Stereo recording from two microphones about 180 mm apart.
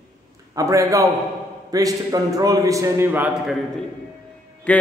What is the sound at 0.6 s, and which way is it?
A man's voice, 15° right (ahead or behind).